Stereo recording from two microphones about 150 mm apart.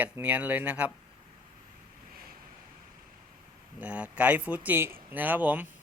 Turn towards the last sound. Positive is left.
turn(degrees=-10)  # may be behind; listen again after turning